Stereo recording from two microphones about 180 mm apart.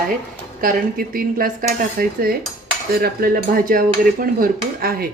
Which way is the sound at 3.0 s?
55° right (ahead or behind).